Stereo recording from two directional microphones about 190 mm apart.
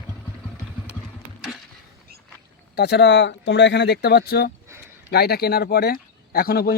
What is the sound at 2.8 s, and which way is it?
Speech, 60° left (ahead or behind).